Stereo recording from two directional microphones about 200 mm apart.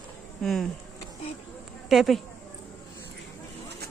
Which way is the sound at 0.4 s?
Centre (ahead or behind).